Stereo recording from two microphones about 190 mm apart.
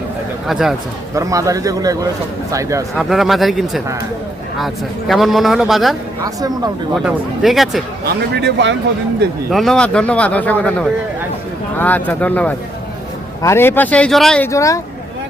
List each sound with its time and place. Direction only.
0.4 s a man's voice: centre (ahead or behind)
1.1 s a man's voice: 15° right (ahead or behind)
2.9 s a man's voice: centre (ahead or behind)
8.0 s speech: 65° right (ahead or behind)
9.5 s speech: centre (ahead or behind); by 14.8 s 15° left (ahead or behind)